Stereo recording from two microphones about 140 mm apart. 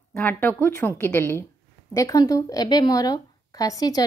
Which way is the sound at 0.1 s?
10° left (ahead or behind).